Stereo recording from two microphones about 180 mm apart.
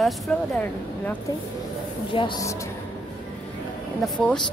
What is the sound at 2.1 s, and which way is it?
Speech, 25° left (ahead or behind).